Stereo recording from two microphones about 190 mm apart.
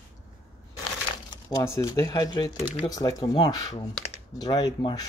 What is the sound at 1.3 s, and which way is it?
Speech, 20° left (ahead or behind).